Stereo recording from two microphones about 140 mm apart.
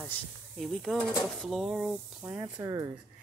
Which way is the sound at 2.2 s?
25° right (ahead or behind).